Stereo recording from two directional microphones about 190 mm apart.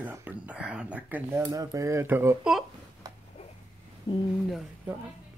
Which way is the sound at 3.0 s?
20° right (ahead or behind).